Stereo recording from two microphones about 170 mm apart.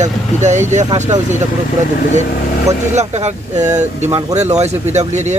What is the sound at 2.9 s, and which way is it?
Speech, 40° right (ahead or behind).